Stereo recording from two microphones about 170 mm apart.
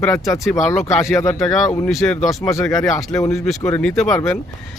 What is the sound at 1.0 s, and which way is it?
Speech, 15° left (ahead or behind).